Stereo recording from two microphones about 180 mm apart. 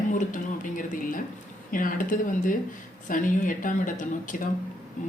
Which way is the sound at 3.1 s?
50° left (ahead or behind).